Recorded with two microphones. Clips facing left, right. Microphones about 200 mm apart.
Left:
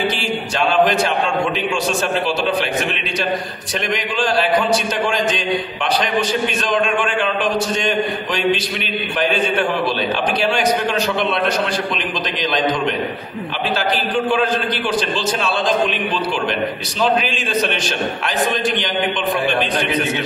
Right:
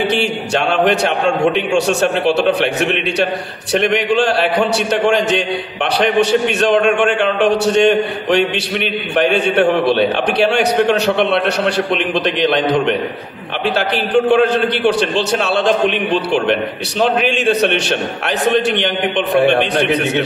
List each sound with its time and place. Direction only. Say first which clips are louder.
0.1 s a man's voice: right 6 dB; 70° right (ahead or behind)
17.0 s a man's voice: right 4 dB; 65° right (ahead or behind)